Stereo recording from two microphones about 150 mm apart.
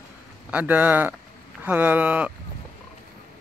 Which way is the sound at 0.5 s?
10° right (ahead or behind).